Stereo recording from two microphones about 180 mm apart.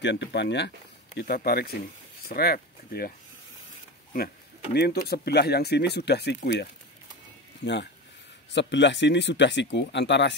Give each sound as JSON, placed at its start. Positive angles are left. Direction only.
{"t": 0.0, "sound": "speech", "side_deg": 70}
{"t": 1.1, "sound": "speech", "side_deg": 60}
{"t": 4.7, "sound": "speech", "side_deg": 60}
{"t": 7.6, "sound": "speech", "side_deg": 75}